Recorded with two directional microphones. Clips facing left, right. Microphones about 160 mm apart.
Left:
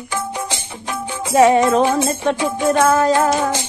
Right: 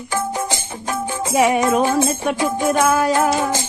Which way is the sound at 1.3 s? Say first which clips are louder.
Left 4 dB; 10° right (ahead or behind).